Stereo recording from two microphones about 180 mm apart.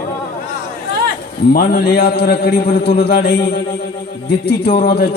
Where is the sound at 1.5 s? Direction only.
55° left (ahead or behind).